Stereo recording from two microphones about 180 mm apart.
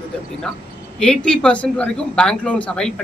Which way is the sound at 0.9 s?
5° left (ahead or behind).